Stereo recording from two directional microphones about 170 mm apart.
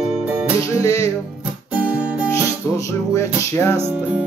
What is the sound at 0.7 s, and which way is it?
Music, 15° left (ahead or behind).